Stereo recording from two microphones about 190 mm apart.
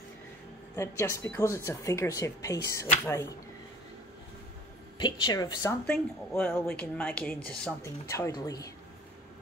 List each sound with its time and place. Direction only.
0.7 s speech: 15° left (ahead or behind)
4.9 s a woman's voice: 25° left (ahead or behind)